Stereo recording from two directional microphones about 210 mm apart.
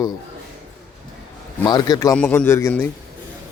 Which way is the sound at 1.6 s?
20° left (ahead or behind).